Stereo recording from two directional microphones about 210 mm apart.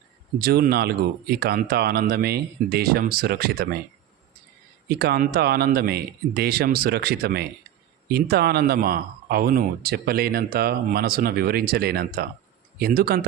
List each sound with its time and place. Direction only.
0.3 s speech: 45° right (ahead or behind)
4.9 s speech: 50° right (ahead or behind)